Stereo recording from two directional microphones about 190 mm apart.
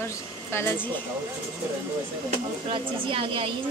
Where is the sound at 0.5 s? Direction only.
10° left (ahead or behind).